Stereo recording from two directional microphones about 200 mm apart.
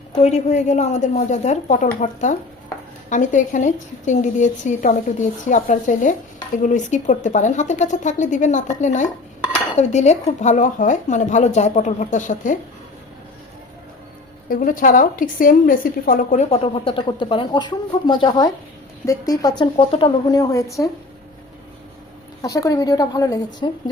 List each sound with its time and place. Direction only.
0.1 s a woman's voice: 35° left (ahead or behind)
14.5 s a woman's voice: 45° left (ahead or behind); by 20.9 s 15° left (ahead or behind)
22.4 s speech: 15° left (ahead or behind)